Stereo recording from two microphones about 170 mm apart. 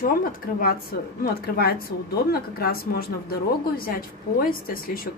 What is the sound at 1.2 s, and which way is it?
Speech, 65° left (ahead or behind).